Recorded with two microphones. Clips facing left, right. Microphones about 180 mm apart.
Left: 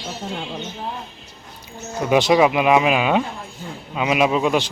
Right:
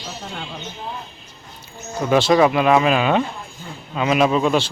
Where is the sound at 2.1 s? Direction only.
15° left (ahead or behind).